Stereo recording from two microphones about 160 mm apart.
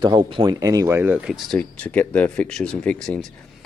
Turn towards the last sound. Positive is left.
turn(degrees=5)  # may be behind; listen again after turning